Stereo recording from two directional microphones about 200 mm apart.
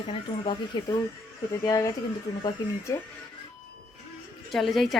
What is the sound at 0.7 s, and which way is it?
Speech, 20° left (ahead or behind).